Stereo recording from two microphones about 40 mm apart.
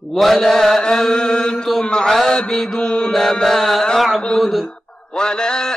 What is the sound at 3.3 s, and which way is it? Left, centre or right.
Mantra, centre.